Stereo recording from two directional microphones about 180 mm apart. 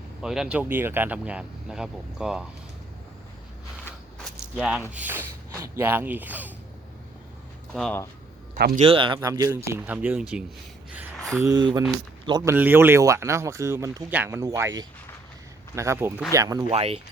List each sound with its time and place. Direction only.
0.2 s speech: 5° right (ahead or behind)
4.2 s a sound: 5° right (ahead or behind)
4.9 s speech: 10° right (ahead or behind)
7.7 s speech: 5° left (ahead or behind)
8.5 s speech: 60° right (ahead or behind)
8.8 s speech: 30° right (ahead or behind)
9.2 s speech: 20° right (ahead or behind)
11.3 s speech: 20° right (ahead or behind)
12.5 s speech: 10° right (ahead or behind)
16.7 s speech: 35° right (ahead or behind)